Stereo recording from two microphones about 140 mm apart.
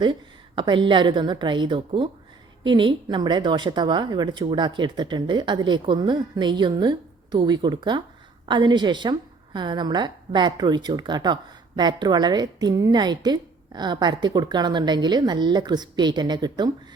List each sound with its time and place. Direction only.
0.0 s a woman's voice: 35° right (ahead or behind)